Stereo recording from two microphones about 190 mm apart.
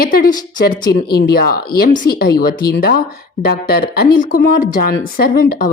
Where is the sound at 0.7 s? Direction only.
55° left (ahead or behind).